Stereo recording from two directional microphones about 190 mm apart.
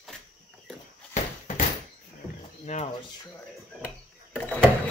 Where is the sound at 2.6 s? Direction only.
35° left (ahead or behind).